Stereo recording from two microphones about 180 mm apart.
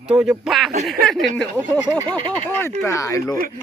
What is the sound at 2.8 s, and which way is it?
Speech, 20° left (ahead or behind).